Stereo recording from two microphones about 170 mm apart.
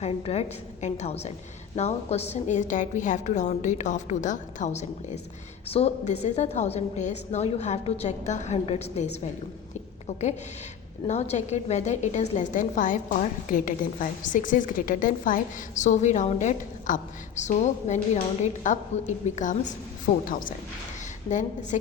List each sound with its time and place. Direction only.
0.0 s a woman's voice: 40° left (ahead or behind)
10.1 s a woman's voice: 40° left (ahead or behind)
21.2 s a woman's voice: 45° left (ahead or behind)